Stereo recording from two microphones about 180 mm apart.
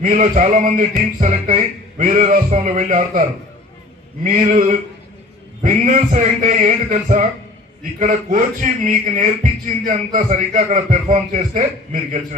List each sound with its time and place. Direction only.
0.0 s speech: 45° right (ahead or behind)